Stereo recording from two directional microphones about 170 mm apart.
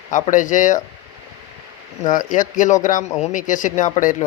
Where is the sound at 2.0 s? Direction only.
50° left (ahead or behind).